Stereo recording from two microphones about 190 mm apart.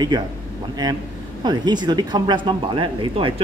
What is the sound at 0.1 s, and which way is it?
Speech, 20° right (ahead or behind).